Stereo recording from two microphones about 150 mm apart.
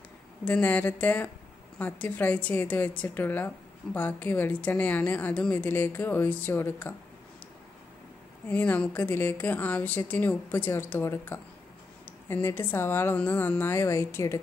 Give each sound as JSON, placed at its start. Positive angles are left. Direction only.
{"t": 0.5, "sound": "a woman's voice", "side_deg": 10}
{"t": 8.5, "sound": "a woman's voice", "side_deg": 10}